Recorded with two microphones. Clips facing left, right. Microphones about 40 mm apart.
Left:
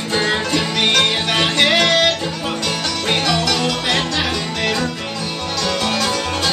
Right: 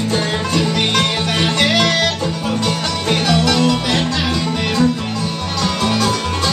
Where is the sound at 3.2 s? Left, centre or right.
Centre.